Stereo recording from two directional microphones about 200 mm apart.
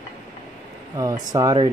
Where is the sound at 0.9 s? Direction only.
20° right (ahead or behind).